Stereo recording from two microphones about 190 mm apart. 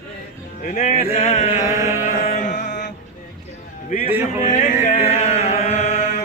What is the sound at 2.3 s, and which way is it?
Music, 40° left (ahead or behind).